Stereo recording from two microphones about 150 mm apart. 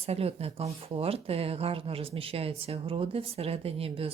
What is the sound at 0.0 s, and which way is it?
Speech, 40° right (ahead or behind).